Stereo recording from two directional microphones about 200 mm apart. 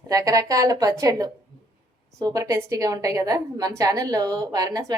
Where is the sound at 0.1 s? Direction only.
15° right (ahead or behind).